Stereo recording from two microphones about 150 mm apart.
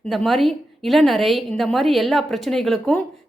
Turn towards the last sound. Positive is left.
turn(degrees=5)  # may be behind; listen again after turning